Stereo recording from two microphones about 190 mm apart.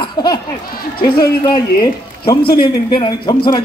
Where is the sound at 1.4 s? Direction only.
20° left (ahead or behind).